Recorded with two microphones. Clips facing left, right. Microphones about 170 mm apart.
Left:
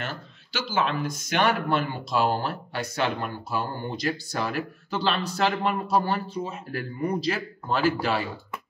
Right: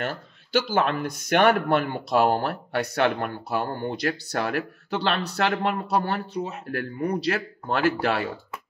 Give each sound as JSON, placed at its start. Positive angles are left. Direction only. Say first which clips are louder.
{"t": 0.0, "sound": "speech", "louder": "right 5 dB", "side_deg": -55}